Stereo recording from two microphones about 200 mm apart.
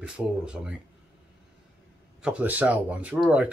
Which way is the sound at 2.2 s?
5° right (ahead or behind).